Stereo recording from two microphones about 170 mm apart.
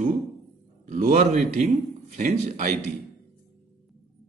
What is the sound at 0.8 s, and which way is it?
Speech, 45° right (ahead or behind).